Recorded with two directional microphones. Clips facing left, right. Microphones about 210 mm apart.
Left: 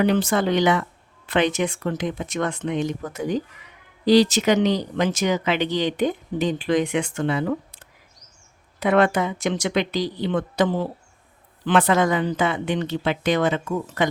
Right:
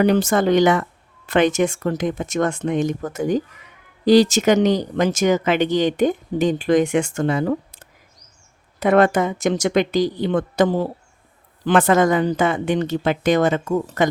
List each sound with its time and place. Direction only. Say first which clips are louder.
0.0 s speech: right 3 dB; 45° right (ahead or behind)